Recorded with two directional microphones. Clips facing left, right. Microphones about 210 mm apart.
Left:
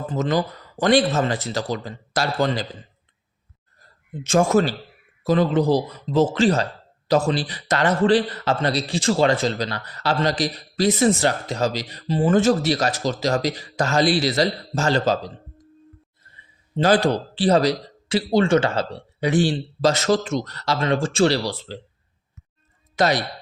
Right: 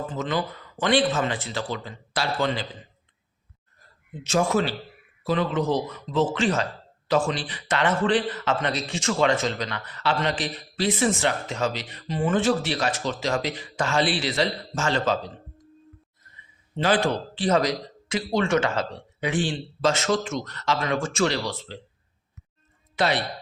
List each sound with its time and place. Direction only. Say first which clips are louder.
0.1 s a man's voice: left 9 dB; 40° left (ahead or behind)
3.8 s a sound: left 5 dB; 50° left (ahead or behind)
5.2 s a man's voice: left 5 dB; 40° left (ahead or behind)
23.0 s a man's voice: left 4 dB; 40° left (ahead or behind)